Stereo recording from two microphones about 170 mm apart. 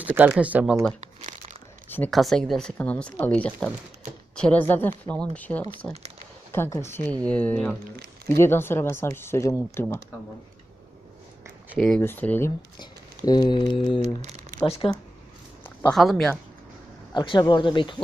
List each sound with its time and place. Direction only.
0.0 s speech: 10° right (ahead or behind)
1.9 s speech: 5° left (ahead or behind)
11.8 s speech: 5° left (ahead or behind)
12.8 s speech: 25° left (ahead or behind)
14.2 s speech: 40° right (ahead or behind)
14.6 s speech: 30° left (ahead or behind)
15.6 s a sound: 10° left (ahead or behind)
16.0 s speech: centre (ahead or behind)
17.2 s speech: 25° left (ahead or behind)